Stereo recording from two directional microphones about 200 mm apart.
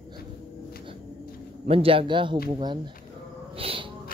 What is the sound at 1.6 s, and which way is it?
Speech, 30° right (ahead or behind).